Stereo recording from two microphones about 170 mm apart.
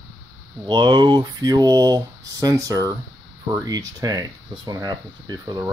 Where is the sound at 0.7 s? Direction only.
25° right (ahead or behind).